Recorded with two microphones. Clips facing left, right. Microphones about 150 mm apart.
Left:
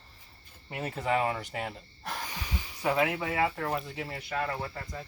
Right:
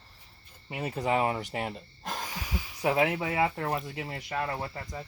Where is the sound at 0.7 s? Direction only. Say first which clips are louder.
Right 1 dB; 15° right (ahead or behind).